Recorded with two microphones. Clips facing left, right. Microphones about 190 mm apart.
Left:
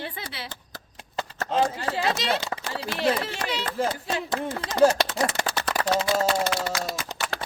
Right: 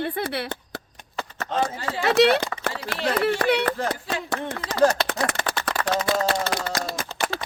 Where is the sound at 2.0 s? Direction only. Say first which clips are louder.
Right 11 dB; 65° right (ahead or behind).